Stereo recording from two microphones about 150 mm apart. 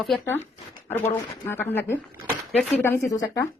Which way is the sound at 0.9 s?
15° left (ahead or behind).